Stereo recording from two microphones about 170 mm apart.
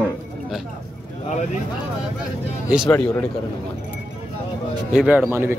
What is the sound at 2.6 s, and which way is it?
Speech, 5° right (ahead or behind).